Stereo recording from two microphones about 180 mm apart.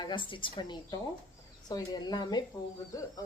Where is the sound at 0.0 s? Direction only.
25° left (ahead or behind).